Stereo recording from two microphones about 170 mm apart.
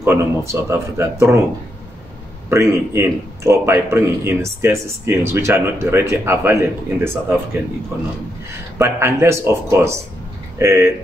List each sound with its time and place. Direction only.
0.0 s a man's voice: 15° right (ahead or behind)
2.5 s a man's voice: 15° right (ahead or behind)
8.7 s a man's voice: 15° right (ahead or behind)